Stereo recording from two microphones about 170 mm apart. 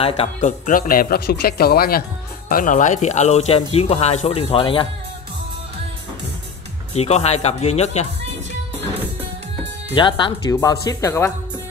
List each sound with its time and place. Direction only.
0.0 s speech: 40° left (ahead or behind); by 2.0 s 65° left (ahead or behind)
2.5 s speech: 50° left (ahead or behind); by 4.8 s 30° left (ahead or behind)
6.9 s speech: 40° left (ahead or behind)
9.9 s speech: 30° left (ahead or behind)